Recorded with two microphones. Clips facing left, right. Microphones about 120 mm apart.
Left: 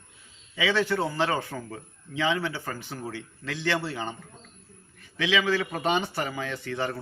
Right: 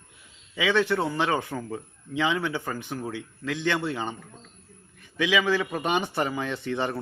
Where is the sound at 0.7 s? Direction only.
20° right (ahead or behind).